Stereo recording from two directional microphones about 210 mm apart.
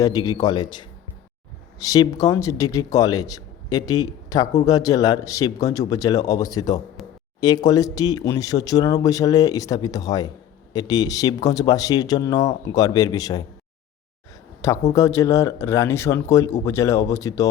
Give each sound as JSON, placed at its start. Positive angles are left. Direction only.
{"t": 0.0, "sound": "speech", "side_deg": 15}
{"t": 14.9, "sound": "speech", "side_deg": 15}